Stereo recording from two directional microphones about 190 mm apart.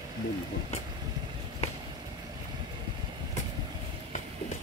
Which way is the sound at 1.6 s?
35° left (ahead or behind).